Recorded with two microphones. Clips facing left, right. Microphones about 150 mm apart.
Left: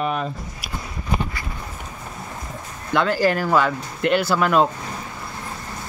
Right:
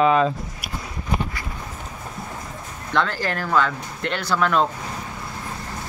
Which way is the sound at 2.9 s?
5° left (ahead or behind).